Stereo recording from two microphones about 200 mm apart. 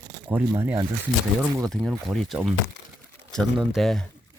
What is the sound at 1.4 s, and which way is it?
Speech, 5° left (ahead or behind).